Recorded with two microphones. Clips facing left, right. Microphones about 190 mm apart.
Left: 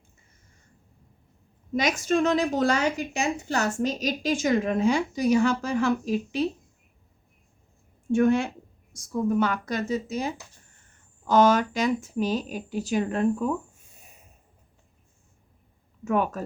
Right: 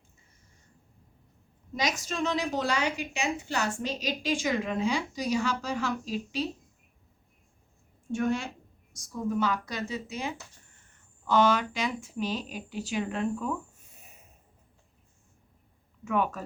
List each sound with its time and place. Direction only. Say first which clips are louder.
1.7 s a woman's voice: left 8 dB; 55° left (ahead or behind)
8.1 s a woman's voice: left 8 dB; 55° left (ahead or behind)
16.0 s a woman's voice: left 4 dB; 45° left (ahead or behind)